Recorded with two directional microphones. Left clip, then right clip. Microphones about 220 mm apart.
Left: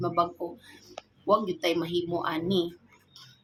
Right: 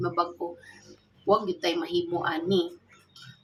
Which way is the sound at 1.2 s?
15° left (ahead or behind).